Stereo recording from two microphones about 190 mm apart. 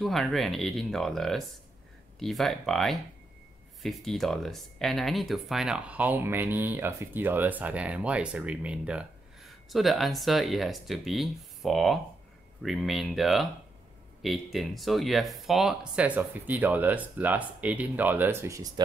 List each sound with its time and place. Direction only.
0.0 s speech: centre (ahead or behind); by 18.7 s 15° right (ahead or behind)